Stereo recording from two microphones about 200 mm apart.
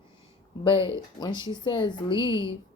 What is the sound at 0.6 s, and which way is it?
Speech, 25° left (ahead or behind).